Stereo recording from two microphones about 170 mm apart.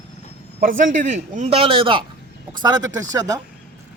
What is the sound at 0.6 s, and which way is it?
Speech, 50° right (ahead or behind).